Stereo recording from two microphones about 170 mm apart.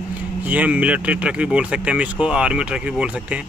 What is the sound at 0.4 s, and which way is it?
Speech, 10° right (ahead or behind).